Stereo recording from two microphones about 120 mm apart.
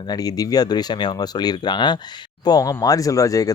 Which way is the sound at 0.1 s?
30° left (ahead or behind).